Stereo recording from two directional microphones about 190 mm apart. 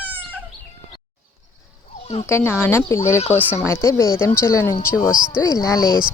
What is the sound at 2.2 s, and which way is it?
Speech, 15° left (ahead or behind).